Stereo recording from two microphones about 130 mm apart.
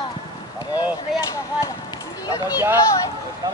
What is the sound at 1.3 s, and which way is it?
Speech, 30° left (ahead or behind).